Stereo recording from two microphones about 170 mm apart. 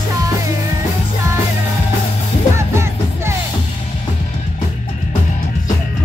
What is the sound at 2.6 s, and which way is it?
Music, 15° right (ahead or behind).